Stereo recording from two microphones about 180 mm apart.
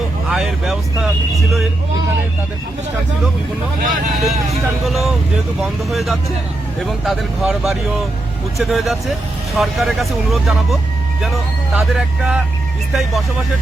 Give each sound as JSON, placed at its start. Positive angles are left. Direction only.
{"t": 0.3, "sound": "speech", "side_deg": 0}
{"t": 3.8, "sound": "speech", "side_deg": -50}
{"t": 4.1, "sound": "speech", "side_deg": 0}